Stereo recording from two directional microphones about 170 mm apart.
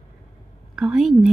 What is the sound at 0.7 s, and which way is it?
Speech, centre (ahead or behind).